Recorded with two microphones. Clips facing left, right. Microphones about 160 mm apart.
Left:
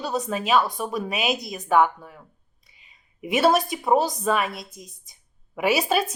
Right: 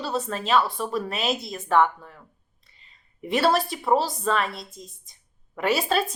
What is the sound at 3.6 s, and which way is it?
Speech, 20° left (ahead or behind).